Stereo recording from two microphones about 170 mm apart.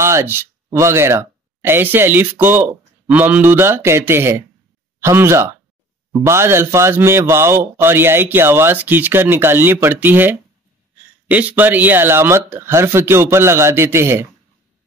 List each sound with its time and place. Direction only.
0.0 s speech: 15° right (ahead or behind)